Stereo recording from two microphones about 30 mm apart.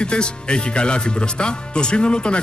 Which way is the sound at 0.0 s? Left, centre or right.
Left.